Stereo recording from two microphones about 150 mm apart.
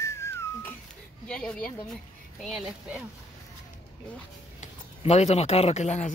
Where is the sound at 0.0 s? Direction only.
20° left (ahead or behind).